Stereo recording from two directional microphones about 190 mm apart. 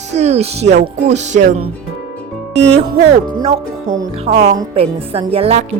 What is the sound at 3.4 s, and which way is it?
Speech, 35° right (ahead or behind).